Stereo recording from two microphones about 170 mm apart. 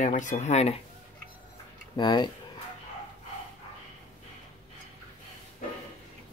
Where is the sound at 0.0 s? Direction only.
50° left (ahead or behind).